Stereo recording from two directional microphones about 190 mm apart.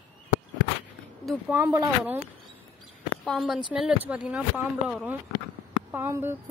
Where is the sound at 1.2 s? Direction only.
5° right (ahead or behind).